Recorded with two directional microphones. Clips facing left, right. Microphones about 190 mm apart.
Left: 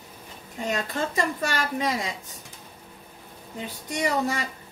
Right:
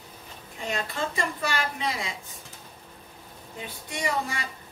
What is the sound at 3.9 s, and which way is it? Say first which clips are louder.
Speech: left 4 dB; 40° left (ahead or behind).